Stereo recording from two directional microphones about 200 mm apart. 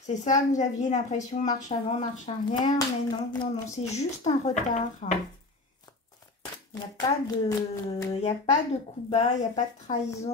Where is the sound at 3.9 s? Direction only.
35° left (ahead or behind).